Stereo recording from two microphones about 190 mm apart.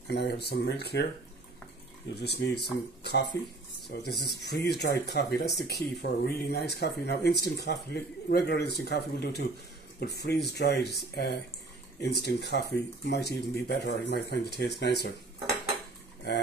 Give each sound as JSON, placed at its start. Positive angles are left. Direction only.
{"t": 0.1, "sound": "speech", "side_deg": 60}
{"t": 2.1, "sound": "speech", "side_deg": 60}
{"t": 12.0, "sound": "speech", "side_deg": 60}